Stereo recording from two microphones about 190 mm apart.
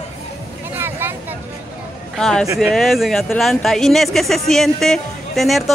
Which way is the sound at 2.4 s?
15° right (ahead or behind).